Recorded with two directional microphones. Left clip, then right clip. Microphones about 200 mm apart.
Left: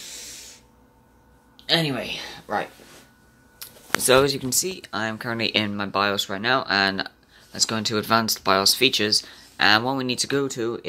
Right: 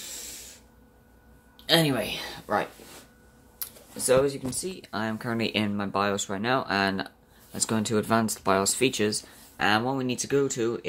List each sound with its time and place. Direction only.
1.7 s speech: 15° right (ahead or behind)
3.6 s computer keyboard: 20° right (ahead or behind)
4.0 s speech: 40° left (ahead or behind)
4.6 s speech: 5° left (ahead or behind)